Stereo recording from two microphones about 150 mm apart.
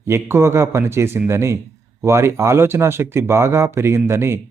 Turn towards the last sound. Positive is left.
turn(degrees=-15)  # may be behind; listen again after turning